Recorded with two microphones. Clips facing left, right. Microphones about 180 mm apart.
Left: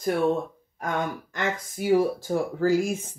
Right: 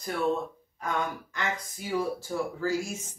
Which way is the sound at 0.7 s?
55° left (ahead or behind).